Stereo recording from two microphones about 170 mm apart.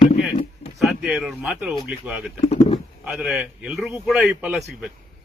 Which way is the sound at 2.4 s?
40° left (ahead or behind).